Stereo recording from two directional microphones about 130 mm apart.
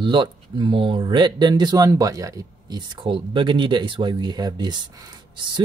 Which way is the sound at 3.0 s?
40° right (ahead or behind).